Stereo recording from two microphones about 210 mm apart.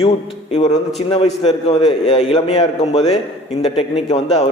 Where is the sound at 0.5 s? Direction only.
35° left (ahead or behind).